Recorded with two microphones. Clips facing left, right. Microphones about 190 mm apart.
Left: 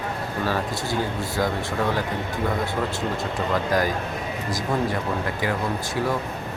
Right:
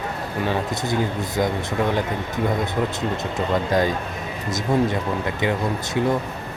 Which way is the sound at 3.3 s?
25° right (ahead or behind).